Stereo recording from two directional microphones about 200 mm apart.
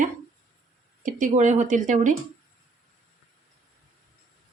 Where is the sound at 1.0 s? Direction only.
40° right (ahead or behind).